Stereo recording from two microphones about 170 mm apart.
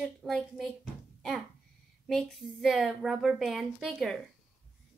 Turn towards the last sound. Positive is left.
turn(degrees=0)  # may be behind; listen again after turning